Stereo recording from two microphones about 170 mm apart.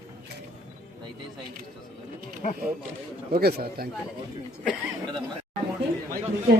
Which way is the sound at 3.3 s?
65° right (ahead or behind).